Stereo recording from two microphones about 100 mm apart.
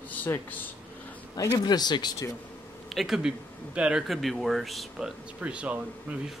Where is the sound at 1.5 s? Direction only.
40° left (ahead or behind).